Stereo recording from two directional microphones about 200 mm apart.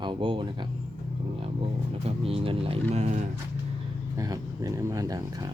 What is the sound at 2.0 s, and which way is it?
Speech, 30° right (ahead or behind).